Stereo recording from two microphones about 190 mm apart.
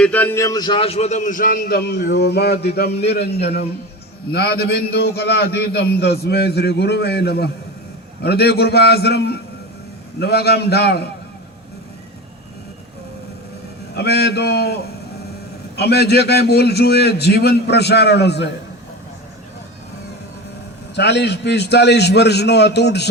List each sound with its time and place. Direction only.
0.0 s a man's voice: 10° left (ahead or behind); by 11.1 s 60° left (ahead or behind)
13.9 s a man's voice: 60° left (ahead or behind)
20.9 s a man's voice: 60° left (ahead or behind)